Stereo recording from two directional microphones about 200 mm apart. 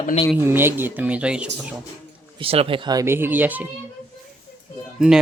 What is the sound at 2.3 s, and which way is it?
Speech, 30° right (ahead or behind).